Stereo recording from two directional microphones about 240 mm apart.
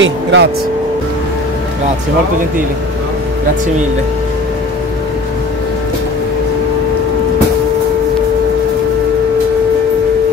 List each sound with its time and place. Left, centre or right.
0.0 s speech: right